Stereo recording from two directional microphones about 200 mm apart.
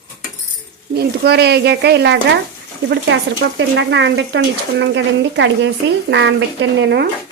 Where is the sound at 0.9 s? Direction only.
55° right (ahead or behind).